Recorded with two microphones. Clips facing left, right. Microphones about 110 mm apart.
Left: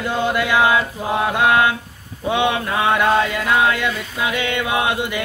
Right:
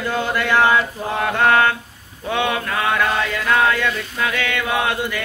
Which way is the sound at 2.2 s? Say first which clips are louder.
Left 2 dB; 20° left (ahead or behind).